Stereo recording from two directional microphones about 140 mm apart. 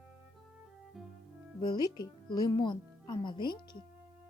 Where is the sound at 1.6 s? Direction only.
30° left (ahead or behind).